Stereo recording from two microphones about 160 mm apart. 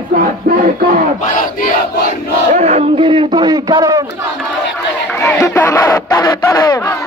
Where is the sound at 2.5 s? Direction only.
45° right (ahead or behind); by 4.0 s 25° right (ahead or behind).